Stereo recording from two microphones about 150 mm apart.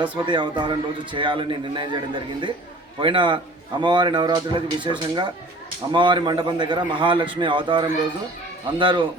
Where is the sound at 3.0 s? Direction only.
35° right (ahead or behind).